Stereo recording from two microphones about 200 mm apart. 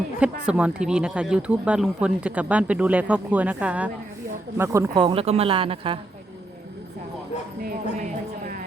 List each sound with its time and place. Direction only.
0.2 s speech: 5° right (ahead or behind)
4.9 s a woman's voice: 25° right (ahead or behind)
7.6 s music: 45° right (ahead or behind)